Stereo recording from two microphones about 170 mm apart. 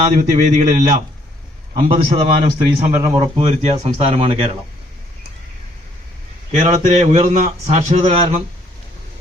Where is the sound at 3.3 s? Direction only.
35° right (ahead or behind).